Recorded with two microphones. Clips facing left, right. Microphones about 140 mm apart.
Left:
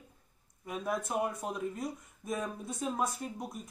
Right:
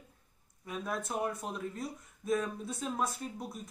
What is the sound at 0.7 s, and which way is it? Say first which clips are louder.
Speech: left 2 dB; 5° left (ahead or behind).